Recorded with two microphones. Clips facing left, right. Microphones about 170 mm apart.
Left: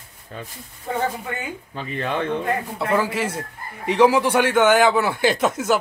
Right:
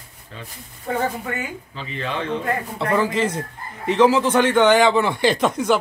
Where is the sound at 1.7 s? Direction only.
50° left (ahead or behind).